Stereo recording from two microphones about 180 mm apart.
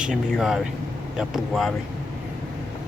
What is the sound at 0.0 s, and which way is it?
Speech, centre (ahead or behind).